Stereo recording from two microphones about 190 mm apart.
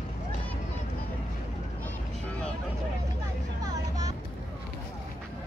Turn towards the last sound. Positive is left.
turn(degrees=-20)  # may be behind; listen again after turning